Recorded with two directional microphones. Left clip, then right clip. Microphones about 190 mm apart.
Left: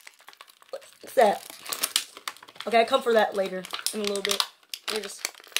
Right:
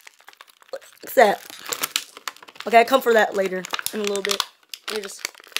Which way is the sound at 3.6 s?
20° right (ahead or behind).